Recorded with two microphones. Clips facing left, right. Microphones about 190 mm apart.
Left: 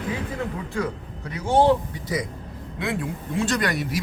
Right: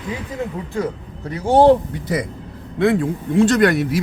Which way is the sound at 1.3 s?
35° right (ahead or behind).